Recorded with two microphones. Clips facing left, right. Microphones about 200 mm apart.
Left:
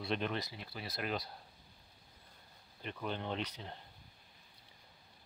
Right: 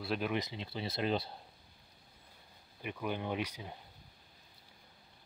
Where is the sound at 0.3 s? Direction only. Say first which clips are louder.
Right 4 dB; 20° right (ahead or behind).